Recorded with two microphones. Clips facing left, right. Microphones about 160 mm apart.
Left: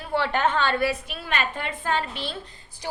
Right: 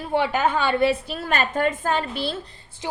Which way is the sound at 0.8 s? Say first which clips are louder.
Right 5 dB; 25° right (ahead or behind).